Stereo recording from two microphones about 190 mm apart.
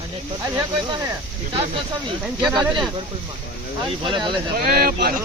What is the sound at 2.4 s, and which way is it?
Speech, 20° right (ahead or behind).